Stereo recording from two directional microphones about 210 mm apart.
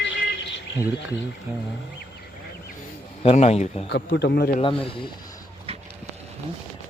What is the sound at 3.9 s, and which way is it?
Speech, 50° left (ahead or behind).